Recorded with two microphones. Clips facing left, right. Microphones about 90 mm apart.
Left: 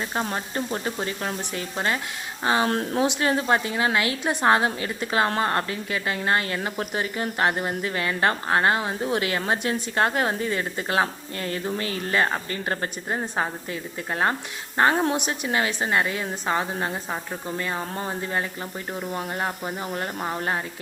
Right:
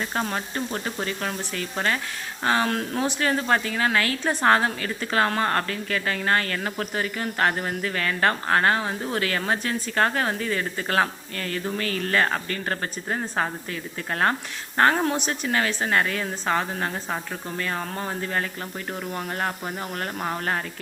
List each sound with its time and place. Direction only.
0.0 s speech: 20° left (ahead or behind)
2.6 s speech: 30° left (ahead or behind); by 20.6 s 10° left (ahead or behind)